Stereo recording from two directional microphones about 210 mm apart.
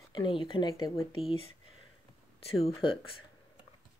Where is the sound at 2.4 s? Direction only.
30° left (ahead or behind).